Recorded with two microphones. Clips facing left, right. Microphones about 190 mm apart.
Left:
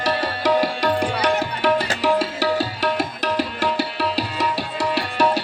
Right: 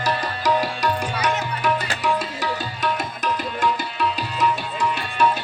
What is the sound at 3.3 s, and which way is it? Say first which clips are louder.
Tabla: left 2 dB; 75° left (ahead or behind).